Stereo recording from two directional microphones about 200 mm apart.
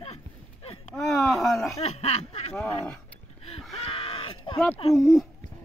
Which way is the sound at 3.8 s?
30° left (ahead or behind).